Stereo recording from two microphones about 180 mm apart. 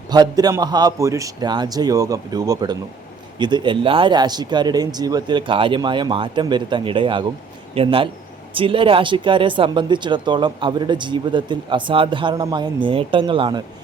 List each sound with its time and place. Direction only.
0.1 s speech: 20° right (ahead or behind)